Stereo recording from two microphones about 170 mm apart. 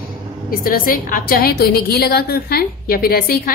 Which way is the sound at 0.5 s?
60° left (ahead or behind).